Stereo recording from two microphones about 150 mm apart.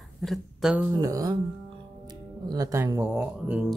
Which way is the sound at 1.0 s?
25° right (ahead or behind).